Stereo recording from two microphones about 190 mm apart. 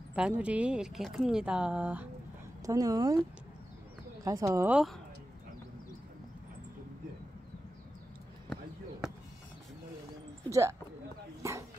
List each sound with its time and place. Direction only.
0.1 s speech: 5° right (ahead or behind)
2.6 s speech: 20° right (ahead or behind)
4.2 s speech: 15° right (ahead or behind)
10.5 s speech: 15° right (ahead or behind)
11.4 s a sound: 15° right (ahead or behind)